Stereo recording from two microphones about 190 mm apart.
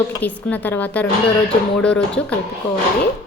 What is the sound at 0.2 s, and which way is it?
A woman's voice, 10° left (ahead or behind).